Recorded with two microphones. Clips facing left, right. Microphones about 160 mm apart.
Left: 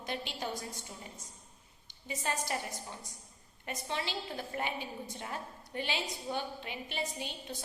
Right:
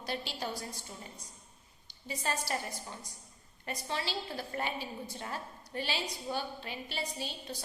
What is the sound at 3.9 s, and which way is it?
A woman's voice, 20° left (ahead or behind).